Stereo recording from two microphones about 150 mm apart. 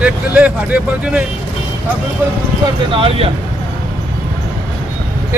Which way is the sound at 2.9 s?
40° right (ahead or behind).